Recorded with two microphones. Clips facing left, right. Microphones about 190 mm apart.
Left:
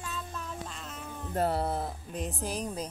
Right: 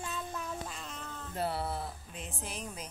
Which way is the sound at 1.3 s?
45° left (ahead or behind).